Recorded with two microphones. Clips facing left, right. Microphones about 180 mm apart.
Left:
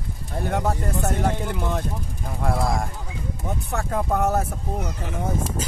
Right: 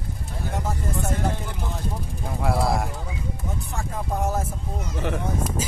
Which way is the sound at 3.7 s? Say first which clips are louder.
Left 6 dB; 65° left (ahead or behind).